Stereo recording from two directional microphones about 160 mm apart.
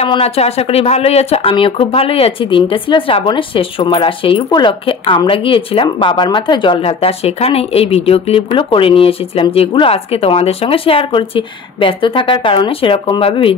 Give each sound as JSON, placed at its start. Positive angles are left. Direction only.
{"t": 0.0, "sound": "speech", "side_deg": 40}